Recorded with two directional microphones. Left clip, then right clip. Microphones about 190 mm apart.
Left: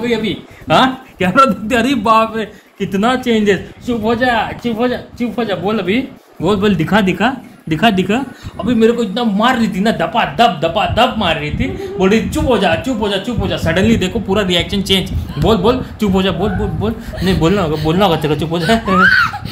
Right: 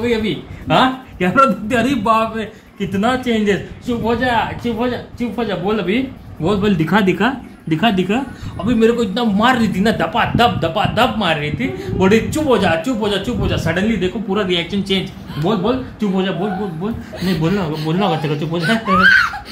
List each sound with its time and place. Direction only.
0.0 s a man's voice: 50° left (ahead or behind)
8.6 s a man's voice: 15° left (ahead or behind)
8.9 s a man's voice: centre (ahead or behind)
13.9 s a man's voice: 60° left (ahead or behind)
17.4 s a man's voice: 60° left (ahead or behind)
18.9 s a man's voice: 5° right (ahead or behind)